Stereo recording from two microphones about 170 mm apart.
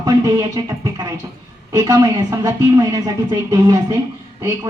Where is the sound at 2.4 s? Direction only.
20° right (ahead or behind).